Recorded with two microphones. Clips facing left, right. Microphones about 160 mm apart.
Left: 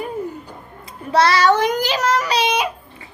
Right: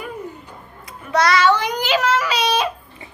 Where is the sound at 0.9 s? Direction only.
30° left (ahead or behind).